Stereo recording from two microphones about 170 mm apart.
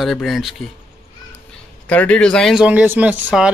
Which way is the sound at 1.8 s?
10° left (ahead or behind).